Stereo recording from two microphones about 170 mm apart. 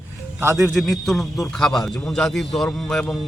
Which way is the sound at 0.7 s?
Centre (ahead or behind).